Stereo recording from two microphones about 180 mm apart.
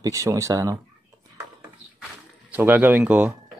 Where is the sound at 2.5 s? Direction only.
10° right (ahead or behind).